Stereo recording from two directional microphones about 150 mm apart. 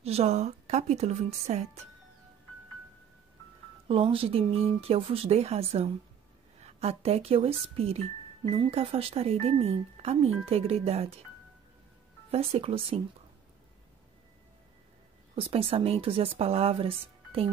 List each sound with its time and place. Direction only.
0.0 s a woman's voice: 45° right (ahead or behind)
3.8 s speech: 35° right (ahead or behind)
12.3 s speech: 40° right (ahead or behind)
15.3 s speech: 40° right (ahead or behind)